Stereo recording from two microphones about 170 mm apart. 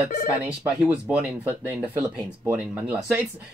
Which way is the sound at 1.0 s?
10° right (ahead or behind).